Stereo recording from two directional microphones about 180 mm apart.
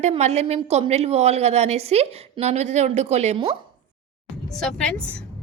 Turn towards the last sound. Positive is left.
turn(degrees=5)  # may be behind; listen again after turning